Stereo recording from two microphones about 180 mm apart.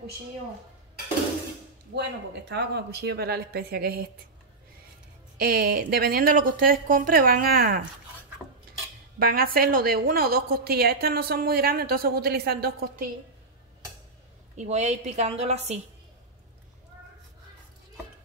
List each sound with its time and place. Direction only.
2.0 s a woman's voice: 70° right (ahead or behind)
5.4 s a woman's voice: 60° right (ahead or behind)
9.2 s a woman's voice: 55° right (ahead or behind)
14.6 s a woman's voice: 40° right (ahead or behind)